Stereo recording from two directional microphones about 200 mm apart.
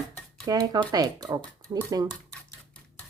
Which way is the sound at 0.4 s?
20° right (ahead or behind).